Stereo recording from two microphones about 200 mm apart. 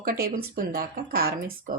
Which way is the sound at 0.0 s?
45° right (ahead or behind).